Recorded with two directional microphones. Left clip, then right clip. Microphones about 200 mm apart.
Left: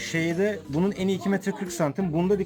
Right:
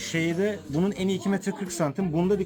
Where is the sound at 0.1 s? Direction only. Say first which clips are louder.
Left 1 dB; 15° left (ahead or behind).